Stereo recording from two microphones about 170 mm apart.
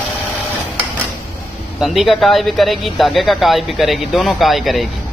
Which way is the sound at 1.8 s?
Centre (ahead or behind).